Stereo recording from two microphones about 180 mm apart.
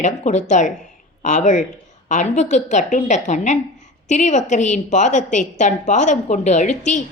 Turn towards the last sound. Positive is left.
turn(degrees=40)  # may be behind; listen again after turning